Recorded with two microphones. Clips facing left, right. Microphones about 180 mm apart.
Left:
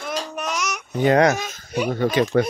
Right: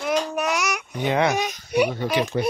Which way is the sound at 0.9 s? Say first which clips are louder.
Left 6 dB; 40° left (ahead or behind).